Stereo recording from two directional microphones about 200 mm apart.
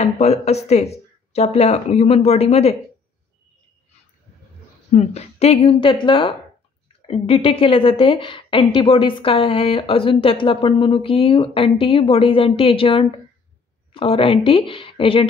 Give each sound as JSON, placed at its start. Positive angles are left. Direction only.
{"t": 0.0, "sound": "speech", "side_deg": 30}
{"t": 4.9, "sound": "a woman's voice", "side_deg": 30}